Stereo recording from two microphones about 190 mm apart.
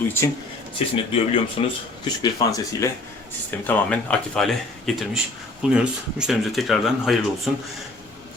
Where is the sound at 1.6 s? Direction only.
25° left (ahead or behind).